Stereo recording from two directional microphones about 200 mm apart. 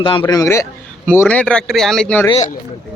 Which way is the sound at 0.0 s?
25° left (ahead or behind).